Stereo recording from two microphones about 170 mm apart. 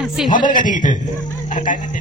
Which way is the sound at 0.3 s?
50° left (ahead or behind).